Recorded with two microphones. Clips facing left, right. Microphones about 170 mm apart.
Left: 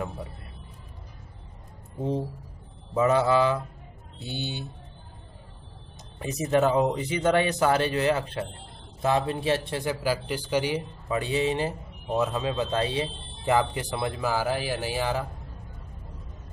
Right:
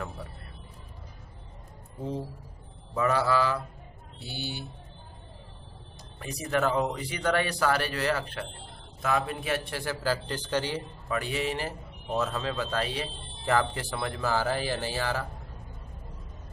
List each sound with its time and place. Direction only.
2.0 s speech: 20° left (ahead or behind)
6.1 s a man's voice: 20° left (ahead or behind)